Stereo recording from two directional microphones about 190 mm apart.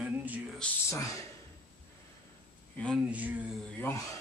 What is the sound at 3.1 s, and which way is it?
Speech, 10° right (ahead or behind).